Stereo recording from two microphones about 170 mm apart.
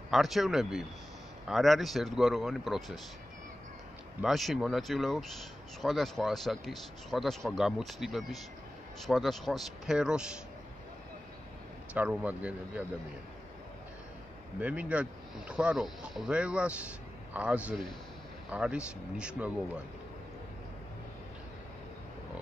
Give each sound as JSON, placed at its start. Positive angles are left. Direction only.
{"t": 0.1, "sound": "speech", "side_deg": 0}
{"t": 4.2, "sound": "speech", "side_deg": 0}
{"t": 11.9, "sound": "speech", "side_deg": -10}
{"t": 14.6, "sound": "speech", "side_deg": -10}